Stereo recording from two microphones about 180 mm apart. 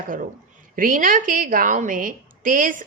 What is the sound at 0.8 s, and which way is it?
Speech, 50° right (ahead or behind).